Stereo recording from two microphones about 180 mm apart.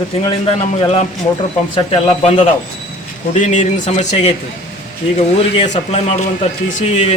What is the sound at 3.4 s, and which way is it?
Speech, 40° left (ahead or behind).